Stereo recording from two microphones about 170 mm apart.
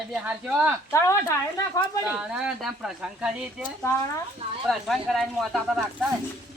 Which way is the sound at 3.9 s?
15° left (ahead or behind).